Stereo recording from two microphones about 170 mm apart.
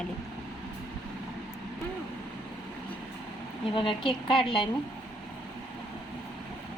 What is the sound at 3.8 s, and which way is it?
Speech, 30° left (ahead or behind).